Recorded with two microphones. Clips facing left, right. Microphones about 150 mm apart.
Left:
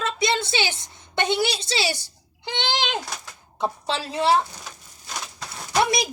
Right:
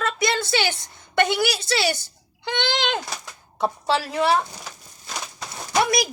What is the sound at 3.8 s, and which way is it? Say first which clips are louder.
Speech: right 1 dB; 25° left (ahead or behind).